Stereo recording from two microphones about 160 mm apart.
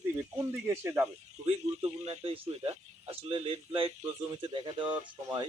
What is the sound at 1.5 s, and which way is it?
Speech, 35° right (ahead or behind).